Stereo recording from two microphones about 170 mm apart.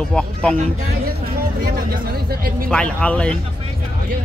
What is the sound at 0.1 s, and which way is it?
Speech, 5° left (ahead or behind).